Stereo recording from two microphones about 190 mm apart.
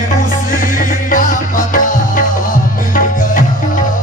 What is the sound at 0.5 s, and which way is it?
Music, 45° left (ahead or behind).